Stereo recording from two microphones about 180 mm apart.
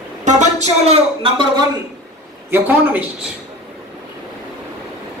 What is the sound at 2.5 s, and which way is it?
Speech, 10° right (ahead or behind).